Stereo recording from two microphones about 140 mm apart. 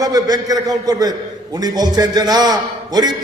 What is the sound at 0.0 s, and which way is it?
A man's voice, 25° right (ahead or behind).